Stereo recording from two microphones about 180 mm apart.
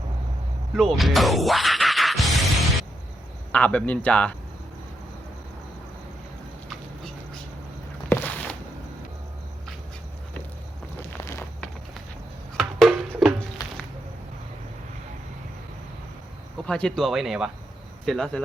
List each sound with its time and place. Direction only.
0.8 s music: centre (ahead or behind)
3.5 s speech: 5° left (ahead or behind)
8.1 s a sound: 10° left (ahead or behind)
12.5 s music: centre (ahead or behind)
13.6 s a sound: 20° left (ahead or behind)
16.6 s speech: 5° left (ahead or behind)